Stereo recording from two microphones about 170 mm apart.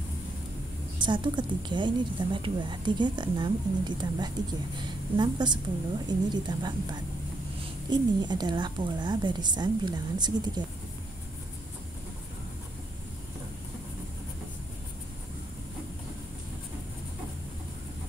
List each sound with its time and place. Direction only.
0.9 s a woman's voice: 25° right (ahead or behind)